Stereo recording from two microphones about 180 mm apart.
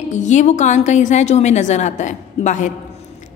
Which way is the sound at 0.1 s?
40° left (ahead or behind).